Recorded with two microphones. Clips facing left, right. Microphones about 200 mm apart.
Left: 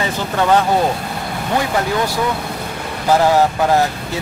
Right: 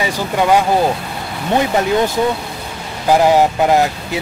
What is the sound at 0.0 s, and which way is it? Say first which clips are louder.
Speech: right 2 dB; 10° right (ahead or behind).